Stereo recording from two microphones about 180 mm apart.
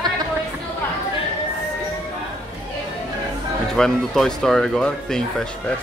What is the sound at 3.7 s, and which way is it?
Speech, centre (ahead or behind).